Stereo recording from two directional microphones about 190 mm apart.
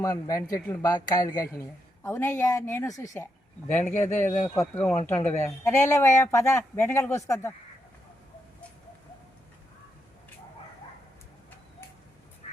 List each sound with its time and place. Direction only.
0.0 s a man's voice: 15° left (ahead or behind)